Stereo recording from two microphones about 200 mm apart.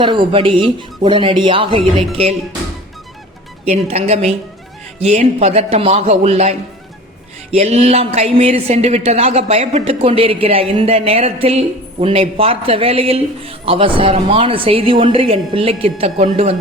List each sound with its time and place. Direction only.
0.0 s speech: 25° right (ahead or behind)
3.7 s speech: 30° right (ahead or behind)